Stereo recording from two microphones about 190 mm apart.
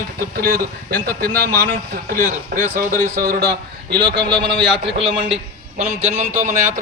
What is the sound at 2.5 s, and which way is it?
Speech, 50° right (ahead or behind).